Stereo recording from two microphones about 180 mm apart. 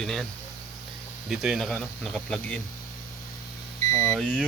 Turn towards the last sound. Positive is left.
turn(degrees=5)  # may be behind; listen again after turning